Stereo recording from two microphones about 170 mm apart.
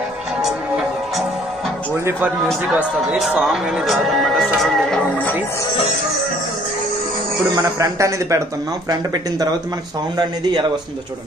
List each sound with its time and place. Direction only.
0.4 s music: centre (ahead or behind)
2.0 s a man's voice: 10° right (ahead or behind)
7.5 s speech: 20° right (ahead or behind)